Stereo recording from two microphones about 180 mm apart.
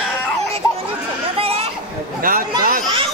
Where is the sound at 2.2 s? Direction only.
50° right (ahead or behind).